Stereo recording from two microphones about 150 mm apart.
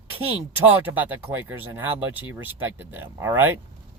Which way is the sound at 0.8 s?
10° right (ahead or behind).